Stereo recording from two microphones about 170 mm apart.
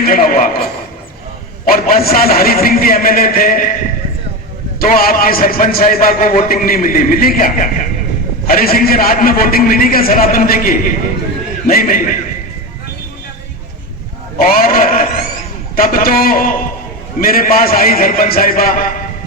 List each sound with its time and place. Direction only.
0.0 s a sound: 55° left (ahead or behind)
1.6 s a man's voice: 60° left (ahead or behind)
4.8 s a man's voice: 60° left (ahead or behind)
14.3 s a man's voice: 60° left (ahead or behind)